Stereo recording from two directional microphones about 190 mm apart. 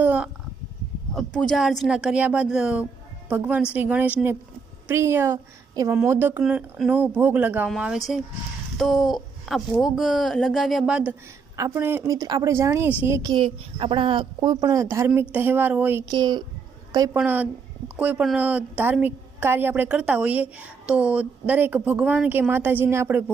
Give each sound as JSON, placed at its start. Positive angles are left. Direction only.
{"t": 0.0, "sound": "a sound", "side_deg": -5}
{"t": 1.1, "sound": "a woman's voice", "side_deg": 5}
{"t": 16.0, "sound": "speech", "side_deg": -25}
{"t": 17.2, "sound": "a woman's voice", "side_deg": -10}